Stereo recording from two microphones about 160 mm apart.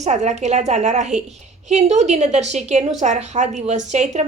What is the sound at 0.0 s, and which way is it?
A woman's voice, 45° right (ahead or behind).